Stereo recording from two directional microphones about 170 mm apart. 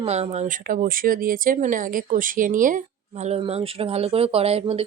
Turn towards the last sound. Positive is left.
turn(degrees=-35)  # may be behind; listen again after turning